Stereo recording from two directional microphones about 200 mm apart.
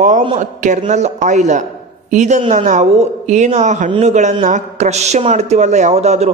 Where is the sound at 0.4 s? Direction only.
35° right (ahead or behind).